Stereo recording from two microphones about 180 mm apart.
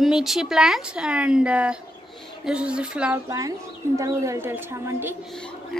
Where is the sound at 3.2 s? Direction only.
20° right (ahead or behind).